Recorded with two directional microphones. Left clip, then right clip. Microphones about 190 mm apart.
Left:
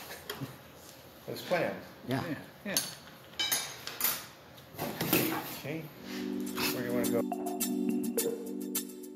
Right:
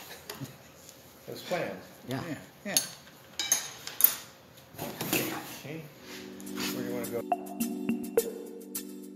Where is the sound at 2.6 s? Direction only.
40° right (ahead or behind).